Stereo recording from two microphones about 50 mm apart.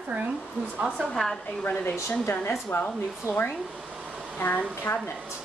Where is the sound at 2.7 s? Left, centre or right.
Left.